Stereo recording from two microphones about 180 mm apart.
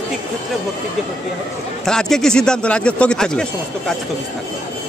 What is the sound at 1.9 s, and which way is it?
Speech, 5° left (ahead or behind).